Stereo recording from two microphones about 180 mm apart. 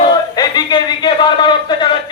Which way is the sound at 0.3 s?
25° left (ahead or behind).